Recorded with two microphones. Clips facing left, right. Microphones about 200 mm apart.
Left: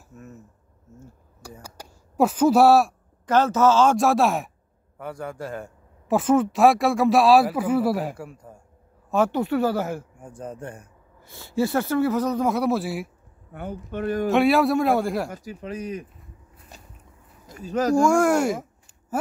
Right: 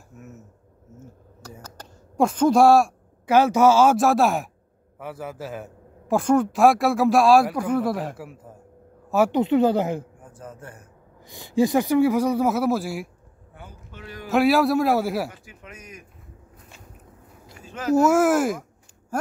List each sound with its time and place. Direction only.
0.1 s dishes: centre (ahead or behind)
0.9 s speech: 10° left (ahead or behind)
1.6 s a sound: 10° left (ahead or behind)
3.3 s a man's voice: 10° right (ahead or behind)
9.4 s speech: 20° right (ahead or behind)
10.4 s a man's voice: 30° left (ahead or behind)
11.2 s a man's voice: 15° right (ahead or behind); by 13.1 s centre (ahead or behind)
13.5 s speech: 60° left (ahead or behind)
14.3 s a man's voice: centre (ahead or behind)
15.2 s speech: 40° left (ahead or behind)
17.5 s speech: 40° left (ahead or behind)
17.9 s a man's voice: 5° right (ahead or behind)